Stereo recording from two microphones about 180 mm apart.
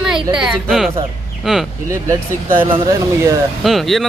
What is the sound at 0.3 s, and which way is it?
Speech, centre (ahead or behind).